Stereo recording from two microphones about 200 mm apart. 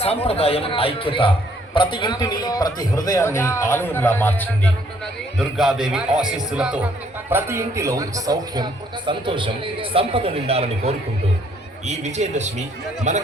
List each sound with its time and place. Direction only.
0.3 s a man's voice: 30° left (ahead or behind); by 4.7 s 10° left (ahead or behind)
5.4 s a man's voice: centre (ahead or behind); by 13.2 s 35° right (ahead or behind)